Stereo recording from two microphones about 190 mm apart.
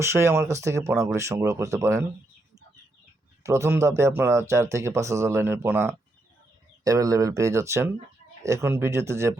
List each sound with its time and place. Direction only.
0.0 s speech: 15° right (ahead or behind)
3.4 s speech: 15° right (ahead or behind)